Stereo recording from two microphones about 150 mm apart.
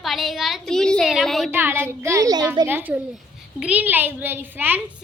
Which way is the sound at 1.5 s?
15° right (ahead or behind).